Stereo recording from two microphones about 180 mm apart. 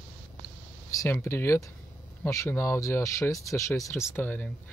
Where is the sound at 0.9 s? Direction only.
15° left (ahead or behind).